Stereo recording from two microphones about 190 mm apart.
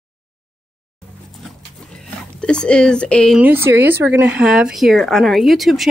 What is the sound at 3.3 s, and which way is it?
Speech, 10° right (ahead or behind).